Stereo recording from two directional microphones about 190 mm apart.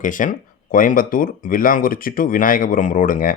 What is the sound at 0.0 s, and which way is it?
Speech, 45° left (ahead or behind).